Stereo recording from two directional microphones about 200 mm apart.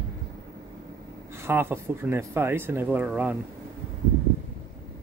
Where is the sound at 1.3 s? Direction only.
10° right (ahead or behind).